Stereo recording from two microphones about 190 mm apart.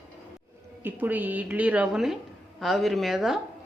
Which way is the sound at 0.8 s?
10° right (ahead or behind).